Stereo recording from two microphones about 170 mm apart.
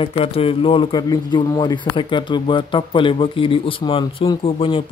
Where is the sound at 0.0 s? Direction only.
35° left (ahead or behind).